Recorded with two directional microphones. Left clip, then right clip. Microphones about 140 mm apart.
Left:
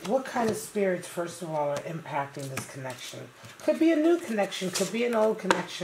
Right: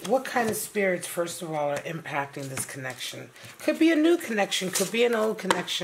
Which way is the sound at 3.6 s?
40° right (ahead or behind).